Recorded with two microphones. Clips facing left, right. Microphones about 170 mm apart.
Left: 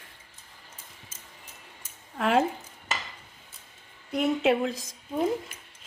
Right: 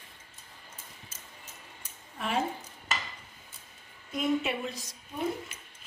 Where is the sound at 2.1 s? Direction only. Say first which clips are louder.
Left 8 dB; 90° left.